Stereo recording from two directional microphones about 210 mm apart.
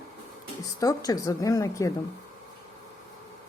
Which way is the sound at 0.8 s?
15° left (ahead or behind).